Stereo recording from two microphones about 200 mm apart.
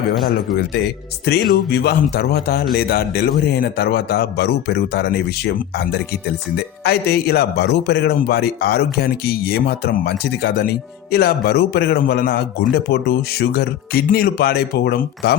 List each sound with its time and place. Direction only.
1.2 s a man's voice: 50° left (ahead or behind)